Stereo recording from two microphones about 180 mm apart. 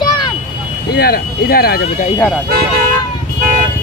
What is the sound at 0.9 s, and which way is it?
Speech, 60° left (ahead or behind).